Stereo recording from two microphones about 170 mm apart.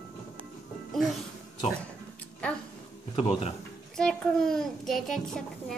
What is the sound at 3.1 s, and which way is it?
Speech, 35° left (ahead or behind).